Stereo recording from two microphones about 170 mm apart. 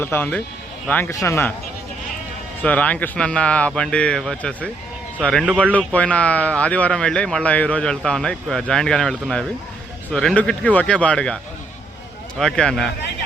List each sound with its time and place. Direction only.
0.0 s speech: 10° left (ahead or behind)
2.6 s speech: 10° left (ahead or behind)
12.4 s speech: 5° left (ahead or behind)